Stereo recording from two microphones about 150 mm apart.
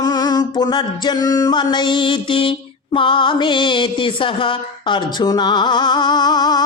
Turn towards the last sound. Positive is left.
turn(degrees=25)  # may be behind; listen again after turning